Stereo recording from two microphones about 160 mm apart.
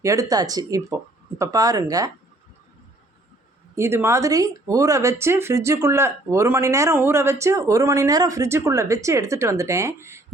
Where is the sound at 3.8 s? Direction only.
15° right (ahead or behind).